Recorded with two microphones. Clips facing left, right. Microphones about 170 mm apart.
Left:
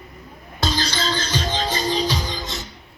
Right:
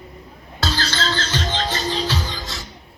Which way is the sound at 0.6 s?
15° left (ahead or behind).